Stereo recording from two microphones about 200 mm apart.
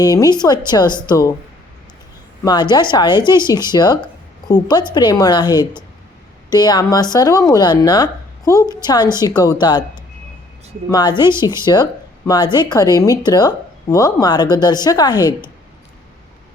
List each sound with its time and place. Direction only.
0.0 s speech: 20° left (ahead or behind)
2.4 s speech: 20° left (ahead or behind)